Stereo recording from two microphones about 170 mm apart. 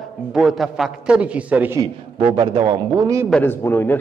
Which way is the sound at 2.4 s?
25° right (ahead or behind).